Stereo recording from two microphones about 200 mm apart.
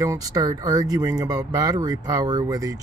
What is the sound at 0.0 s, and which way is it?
Speech, 15° right (ahead or behind).